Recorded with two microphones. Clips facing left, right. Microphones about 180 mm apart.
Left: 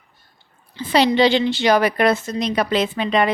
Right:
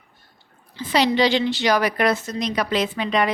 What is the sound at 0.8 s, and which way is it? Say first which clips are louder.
A woman's voice: left 3 dB; 30° left (ahead or behind).